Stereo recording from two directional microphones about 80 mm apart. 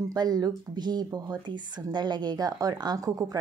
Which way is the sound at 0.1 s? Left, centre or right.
Right.